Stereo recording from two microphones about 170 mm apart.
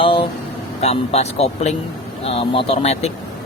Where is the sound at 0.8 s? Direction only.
40° left (ahead or behind).